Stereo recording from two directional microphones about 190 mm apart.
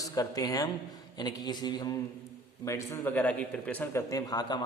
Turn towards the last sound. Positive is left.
turn(degrees=20)  # may be behind; listen again after turning